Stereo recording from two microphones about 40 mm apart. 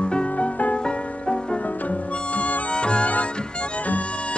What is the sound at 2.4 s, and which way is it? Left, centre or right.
Music, left.